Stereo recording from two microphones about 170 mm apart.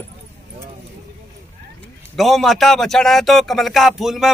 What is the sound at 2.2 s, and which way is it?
A man's voice, centre (ahead or behind).